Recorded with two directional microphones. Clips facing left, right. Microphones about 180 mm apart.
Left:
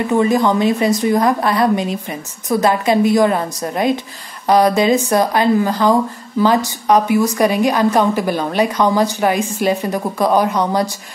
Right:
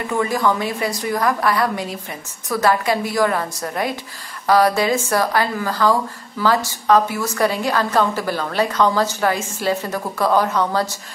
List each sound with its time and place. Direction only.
0.0 s a woman's voice: 20° left (ahead or behind)